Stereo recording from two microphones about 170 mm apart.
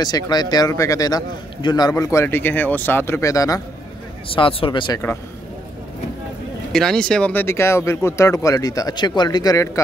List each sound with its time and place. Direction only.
0.0 s a man's voice: 25° left (ahead or behind)
4.3 s speech: 30° left (ahead or behind)
6.7 s speech: 5° left (ahead or behind); by 9.7 s 20° left (ahead or behind)